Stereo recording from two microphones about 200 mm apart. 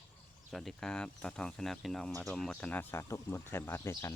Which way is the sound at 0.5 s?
Centre (ahead or behind).